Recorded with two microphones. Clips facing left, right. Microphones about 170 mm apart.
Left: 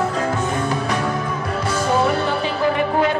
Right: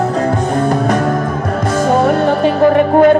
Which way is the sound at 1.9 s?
50° right (ahead or behind).